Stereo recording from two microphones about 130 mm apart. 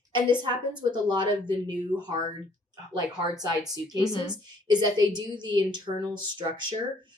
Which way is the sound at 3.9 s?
35° left (ahead or behind).